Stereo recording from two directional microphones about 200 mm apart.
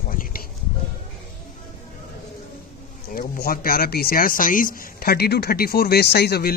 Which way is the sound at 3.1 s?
45° left (ahead or behind).